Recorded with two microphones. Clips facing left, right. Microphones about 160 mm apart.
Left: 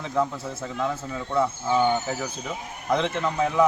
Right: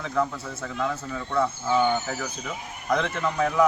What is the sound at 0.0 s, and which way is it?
A man's voice, 20° left (ahead or behind).